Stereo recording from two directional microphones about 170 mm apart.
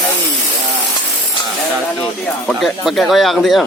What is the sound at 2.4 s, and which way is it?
Speech, centre (ahead or behind).